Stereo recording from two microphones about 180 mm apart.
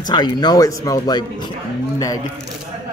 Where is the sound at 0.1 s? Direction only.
25° left (ahead or behind).